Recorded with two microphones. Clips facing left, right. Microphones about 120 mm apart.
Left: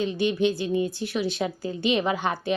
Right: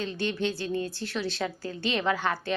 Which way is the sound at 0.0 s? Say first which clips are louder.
Left 6 dB; 15° left (ahead or behind).